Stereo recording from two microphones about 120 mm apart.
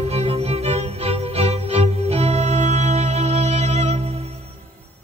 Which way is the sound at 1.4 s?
60° right (ahead or behind).